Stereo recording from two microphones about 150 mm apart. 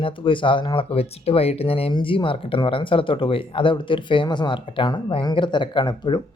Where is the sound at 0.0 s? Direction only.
35° left (ahead or behind).